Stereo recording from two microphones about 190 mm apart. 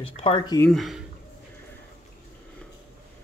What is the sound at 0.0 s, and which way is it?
Speech, 30° left (ahead or behind).